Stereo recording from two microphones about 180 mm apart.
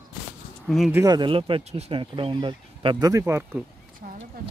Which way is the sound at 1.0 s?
25° right (ahead or behind).